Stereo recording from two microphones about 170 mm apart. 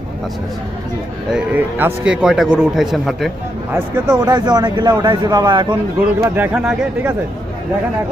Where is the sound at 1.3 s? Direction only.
10° right (ahead or behind).